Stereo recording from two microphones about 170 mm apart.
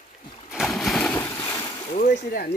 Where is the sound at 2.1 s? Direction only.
60° left (ahead or behind).